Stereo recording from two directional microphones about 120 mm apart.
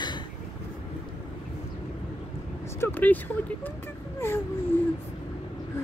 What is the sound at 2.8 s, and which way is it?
Speech, 15° left (ahead or behind).